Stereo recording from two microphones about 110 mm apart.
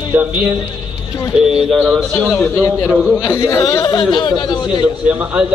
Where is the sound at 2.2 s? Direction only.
5° left (ahead or behind).